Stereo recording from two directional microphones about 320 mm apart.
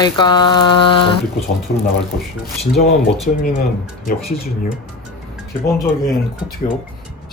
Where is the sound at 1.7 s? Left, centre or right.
Left.